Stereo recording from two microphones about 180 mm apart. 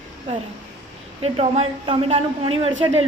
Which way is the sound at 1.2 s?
35° right (ahead or behind).